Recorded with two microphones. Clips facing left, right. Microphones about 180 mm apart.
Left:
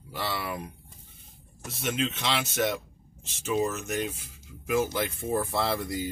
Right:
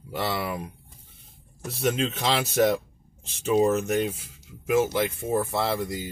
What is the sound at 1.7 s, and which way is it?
Speech, 35° right (ahead or behind).